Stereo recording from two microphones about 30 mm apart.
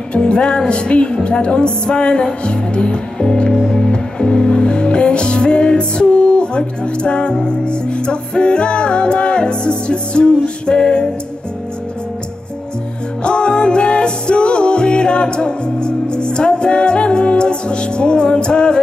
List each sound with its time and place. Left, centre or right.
0.1 s music: left
13.2 s music: left